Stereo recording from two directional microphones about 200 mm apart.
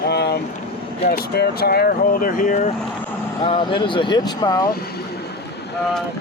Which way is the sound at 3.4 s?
25° left (ahead or behind).